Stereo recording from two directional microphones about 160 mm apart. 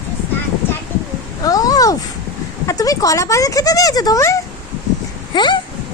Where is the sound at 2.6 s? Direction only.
20° left (ahead or behind).